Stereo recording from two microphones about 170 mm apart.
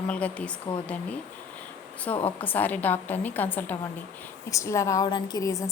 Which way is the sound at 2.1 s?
10° left (ahead or behind).